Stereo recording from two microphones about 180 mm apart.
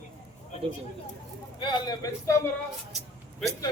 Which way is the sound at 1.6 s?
25° left (ahead or behind).